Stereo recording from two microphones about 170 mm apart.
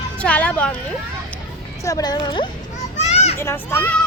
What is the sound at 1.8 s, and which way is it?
Speech, 20° left (ahead or behind).